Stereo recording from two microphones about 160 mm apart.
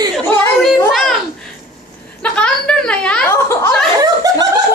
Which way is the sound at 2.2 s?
5° left (ahead or behind).